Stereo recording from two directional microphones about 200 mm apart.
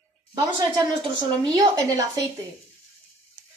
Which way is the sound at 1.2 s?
15° right (ahead or behind).